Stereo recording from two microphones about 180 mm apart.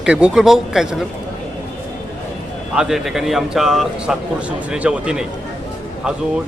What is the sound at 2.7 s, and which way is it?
A man's voice, 5° right (ahead or behind).